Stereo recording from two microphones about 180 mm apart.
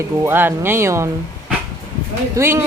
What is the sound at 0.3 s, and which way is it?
Speech, 10° right (ahead or behind).